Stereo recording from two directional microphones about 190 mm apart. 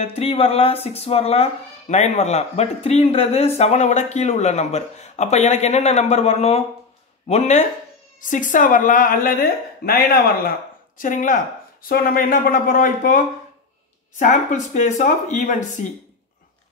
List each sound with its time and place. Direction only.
0.0 s a woman's voice: 30° left (ahead or behind)